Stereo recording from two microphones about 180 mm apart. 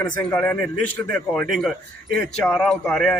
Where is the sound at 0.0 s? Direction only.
10° left (ahead or behind).